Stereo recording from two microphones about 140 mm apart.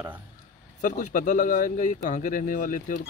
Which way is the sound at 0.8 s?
65° left (ahead or behind).